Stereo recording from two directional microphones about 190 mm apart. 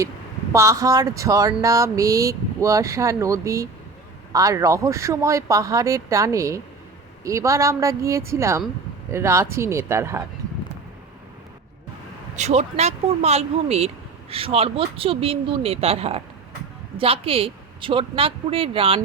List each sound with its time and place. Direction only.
0.5 s speech: 15° right (ahead or behind)
12.4 s a woman's voice: 35° right (ahead or behind)